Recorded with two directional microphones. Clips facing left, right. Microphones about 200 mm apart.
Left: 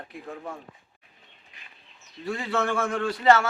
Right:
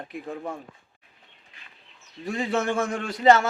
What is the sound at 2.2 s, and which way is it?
A man's voice, 20° right (ahead or behind).